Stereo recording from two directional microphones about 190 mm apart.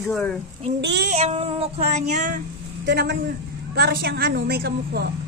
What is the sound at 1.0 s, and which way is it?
Child singing, 35° right (ahead or behind).